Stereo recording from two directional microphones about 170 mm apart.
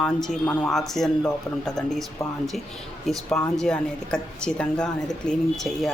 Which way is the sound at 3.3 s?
5° left (ahead or behind).